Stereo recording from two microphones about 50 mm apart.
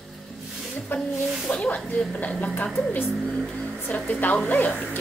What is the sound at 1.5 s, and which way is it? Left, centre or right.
A woman's voice, left.